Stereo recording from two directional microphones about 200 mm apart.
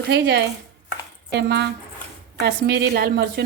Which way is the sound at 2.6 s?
50° right (ahead or behind).